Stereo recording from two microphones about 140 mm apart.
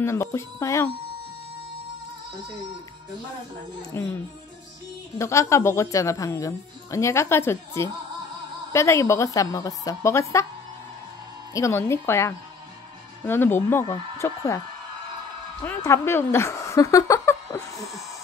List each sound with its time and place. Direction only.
0.0 s a woman's voice: 20° left (ahead or behind)
3.9 s speech: 15° left (ahead or behind)
5.2 s a woman's voice: 20° left (ahead or behind)
11.5 s a woman's voice: 20° left (ahead or behind)
15.8 s a woman's voice: 20° left (ahead or behind)